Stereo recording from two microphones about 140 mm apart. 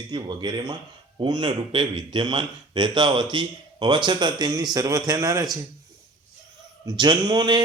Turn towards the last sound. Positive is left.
turn(degrees=-35)  # may be behind; listen again after turning